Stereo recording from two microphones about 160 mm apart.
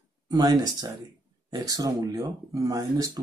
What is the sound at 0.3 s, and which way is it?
Speech, 25° right (ahead or behind).